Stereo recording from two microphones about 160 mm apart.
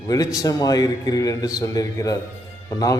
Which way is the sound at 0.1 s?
20° left (ahead or behind).